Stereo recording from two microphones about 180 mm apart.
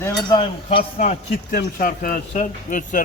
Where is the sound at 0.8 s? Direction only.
40° left (ahead or behind).